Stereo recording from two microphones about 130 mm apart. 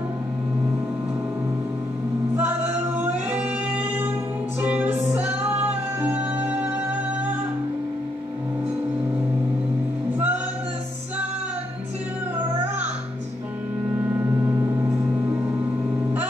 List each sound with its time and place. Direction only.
2.3 s male singing: 15° right (ahead or behind)
3.3 s saxophone: 15° right (ahead or behind)
4.6 s music: 15° right (ahead or behind)
10.1 s music: 15° right (ahead or behind)
14.0 s music: 20° right (ahead or behind)